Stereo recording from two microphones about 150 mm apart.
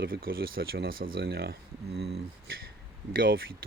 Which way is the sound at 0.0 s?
80° right.